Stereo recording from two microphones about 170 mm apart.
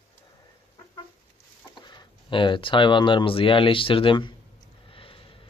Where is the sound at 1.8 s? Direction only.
25° left (ahead or behind).